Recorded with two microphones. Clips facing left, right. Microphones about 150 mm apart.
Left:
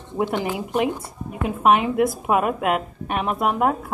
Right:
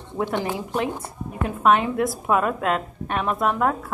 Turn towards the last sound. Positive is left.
turn(degrees=15)  # may be behind; listen again after turning